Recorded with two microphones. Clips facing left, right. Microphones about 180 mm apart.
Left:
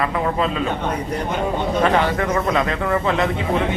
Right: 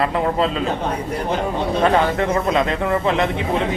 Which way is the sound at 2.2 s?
25° right (ahead or behind).